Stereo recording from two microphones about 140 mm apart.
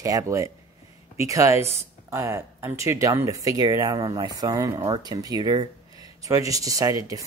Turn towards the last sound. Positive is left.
turn(degrees=-25)  # may be behind; listen again after turning